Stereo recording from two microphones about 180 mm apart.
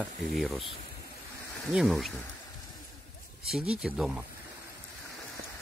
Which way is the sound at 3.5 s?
5° right (ahead or behind).